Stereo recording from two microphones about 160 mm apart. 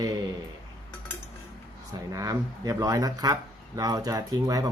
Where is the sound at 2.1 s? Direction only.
20° right (ahead or behind).